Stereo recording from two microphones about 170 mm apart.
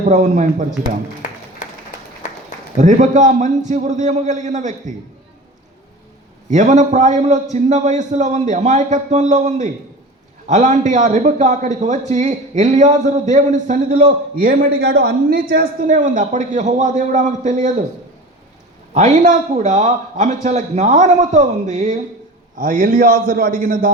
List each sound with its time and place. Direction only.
0.0 s a man's voice: 50° right (ahead or behind)
2.7 s a man's voice: 45° right (ahead or behind)
6.5 s a man's voice: 45° right (ahead or behind)
18.9 s a man's voice: 50° right (ahead or behind)